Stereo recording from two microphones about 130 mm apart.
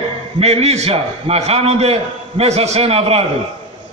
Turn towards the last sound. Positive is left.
turn(degrees=-50)  # may be behind; listen again after turning